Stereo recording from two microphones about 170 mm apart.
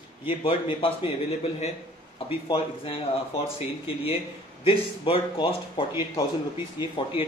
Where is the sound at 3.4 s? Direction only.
35° left (ahead or behind).